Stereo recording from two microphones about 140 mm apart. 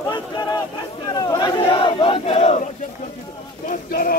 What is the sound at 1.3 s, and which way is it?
Battle cry, 30° left (ahead or behind).